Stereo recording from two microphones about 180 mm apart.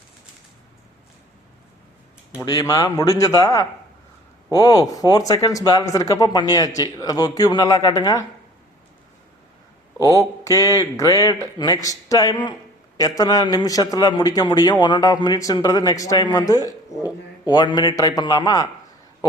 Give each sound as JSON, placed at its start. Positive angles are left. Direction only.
{"t": 2.4, "sound": "a man's voice", "side_deg": 20}
{"t": 10.1, "sound": "a man's voice", "side_deg": 20}